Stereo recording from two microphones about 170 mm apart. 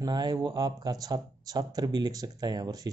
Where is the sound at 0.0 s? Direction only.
25° right (ahead or behind).